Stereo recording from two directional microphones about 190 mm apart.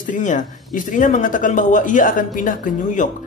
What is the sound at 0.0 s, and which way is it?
Speech, 40° left (ahead or behind).